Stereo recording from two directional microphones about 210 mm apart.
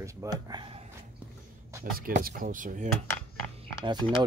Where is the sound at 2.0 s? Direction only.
45° right (ahead or behind).